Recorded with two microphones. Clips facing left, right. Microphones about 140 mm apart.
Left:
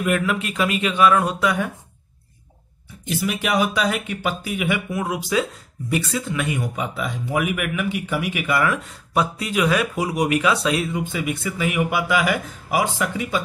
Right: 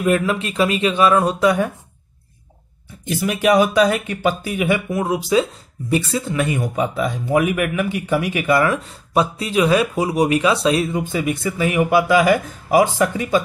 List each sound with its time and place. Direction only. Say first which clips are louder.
0.0 s speech: right 4 dB; 30° right (ahead or behind)
3.3 s speech: right 7 dB; 45° right (ahead or behind)
8.7 s speech: right 3 dB; 25° right (ahead or behind); by 13.4 s 40° right (ahead or behind)